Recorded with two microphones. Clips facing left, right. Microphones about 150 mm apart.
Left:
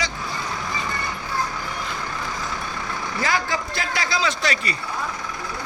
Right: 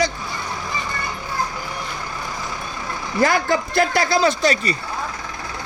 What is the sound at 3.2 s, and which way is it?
Speech, 55° right (ahead or behind).